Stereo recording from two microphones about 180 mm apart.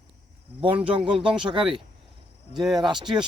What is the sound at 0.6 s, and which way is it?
Speech, 30° right (ahead or behind).